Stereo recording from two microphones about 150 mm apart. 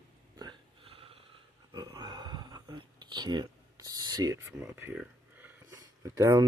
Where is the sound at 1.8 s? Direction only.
25° right (ahead or behind).